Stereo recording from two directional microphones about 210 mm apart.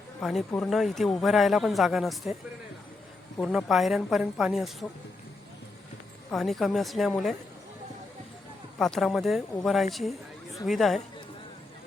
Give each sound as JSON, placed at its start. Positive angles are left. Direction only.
{"t": 0.2, "sound": "speech", "side_deg": 0}
{"t": 3.3, "sound": "speech", "side_deg": 5}
{"t": 6.3, "sound": "speech", "side_deg": 0}
{"t": 8.8, "sound": "speech", "side_deg": 0}